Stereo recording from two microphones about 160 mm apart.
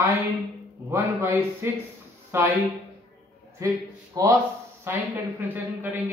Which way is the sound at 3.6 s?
20° right (ahead or behind).